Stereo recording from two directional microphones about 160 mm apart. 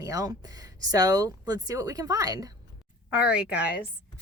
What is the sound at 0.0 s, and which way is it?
Speech, 20° right (ahead or behind).